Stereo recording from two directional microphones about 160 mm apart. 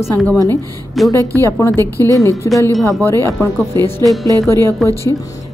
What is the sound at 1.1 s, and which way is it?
Speech, 20° right (ahead or behind).